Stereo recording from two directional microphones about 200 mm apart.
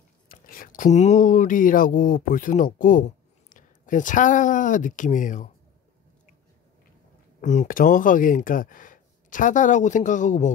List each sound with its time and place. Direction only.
0.3 s speech: 45° left (ahead or behind)
7.4 s speech: 40° left (ahead or behind)